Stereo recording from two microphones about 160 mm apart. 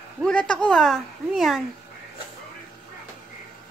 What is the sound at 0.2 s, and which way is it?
Speech, 5° left (ahead or behind).